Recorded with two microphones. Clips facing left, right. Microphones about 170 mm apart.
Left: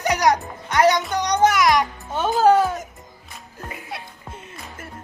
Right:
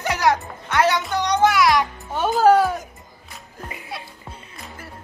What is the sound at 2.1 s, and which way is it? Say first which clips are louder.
Music: right 1 dB; 10° right (ahead or behind).